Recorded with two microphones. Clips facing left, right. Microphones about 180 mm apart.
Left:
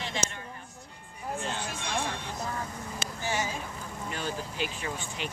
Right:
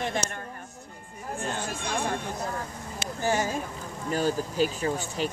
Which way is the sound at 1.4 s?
45° right (ahead or behind).